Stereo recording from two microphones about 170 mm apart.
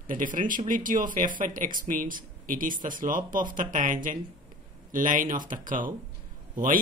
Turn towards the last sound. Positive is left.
turn(degrees=-50)  # may be behind; listen again after turning